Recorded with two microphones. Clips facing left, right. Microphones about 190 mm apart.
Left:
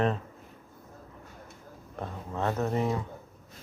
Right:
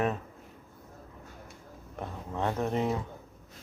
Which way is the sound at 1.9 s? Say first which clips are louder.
Left 1 dB; 15° right (ahead or behind).